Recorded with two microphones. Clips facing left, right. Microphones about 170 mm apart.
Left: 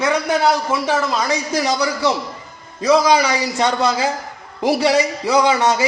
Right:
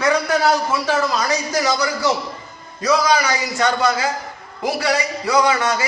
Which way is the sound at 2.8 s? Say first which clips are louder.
Left 3 dB; 25° left (ahead or behind).